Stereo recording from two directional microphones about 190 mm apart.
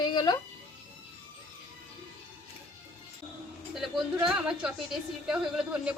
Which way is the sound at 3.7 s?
Centre (ahead or behind).